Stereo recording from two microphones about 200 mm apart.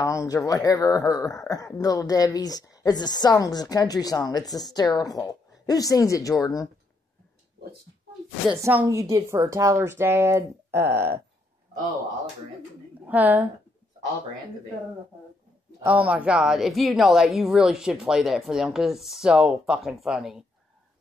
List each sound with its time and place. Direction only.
0.0 s speech: 15° left (ahead or behind)
8.5 s speech: 15° right (ahead or behind)
13.0 s a woman's voice: 10° right (ahead or behind)
15.8 s a woman's voice: 5° right (ahead or behind)